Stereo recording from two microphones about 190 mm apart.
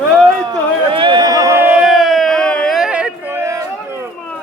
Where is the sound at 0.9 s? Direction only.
25° right (ahead or behind); by 3.5 s 10° right (ahead or behind).